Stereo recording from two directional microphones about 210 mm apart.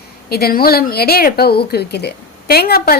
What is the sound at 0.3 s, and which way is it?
A woman's voice, 45° left (ahead or behind).